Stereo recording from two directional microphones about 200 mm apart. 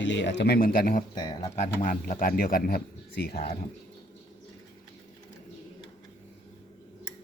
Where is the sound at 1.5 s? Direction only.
40° left (ahead or behind).